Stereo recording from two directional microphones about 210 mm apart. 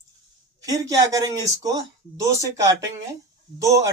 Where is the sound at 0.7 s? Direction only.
15° right (ahead or behind).